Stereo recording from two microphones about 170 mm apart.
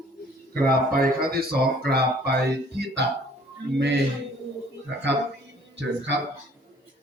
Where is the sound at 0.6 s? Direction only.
60° right (ahead or behind).